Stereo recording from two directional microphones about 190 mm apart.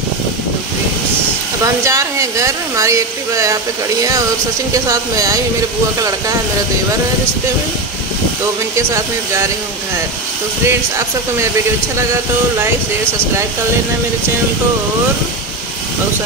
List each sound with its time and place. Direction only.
1.9 s speech: 15° right (ahead or behind)
4.8 s speech: 20° right (ahead or behind)
8.7 s speech: 15° right (ahead or behind)